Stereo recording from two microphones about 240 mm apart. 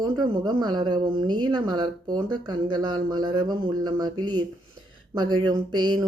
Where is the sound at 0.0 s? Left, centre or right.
Centre.